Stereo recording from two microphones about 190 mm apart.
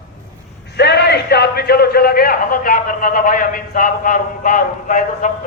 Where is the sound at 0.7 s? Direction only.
60° left (ahead or behind).